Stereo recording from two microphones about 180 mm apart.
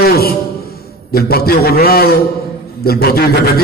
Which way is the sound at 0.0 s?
60° left (ahead or behind).